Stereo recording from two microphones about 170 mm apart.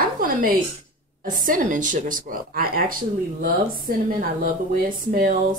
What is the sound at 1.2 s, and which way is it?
A woman's voice, 55° right (ahead or behind).